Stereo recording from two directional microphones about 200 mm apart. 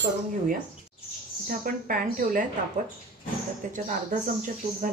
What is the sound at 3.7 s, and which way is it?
A woman's voice, 40° right (ahead or behind).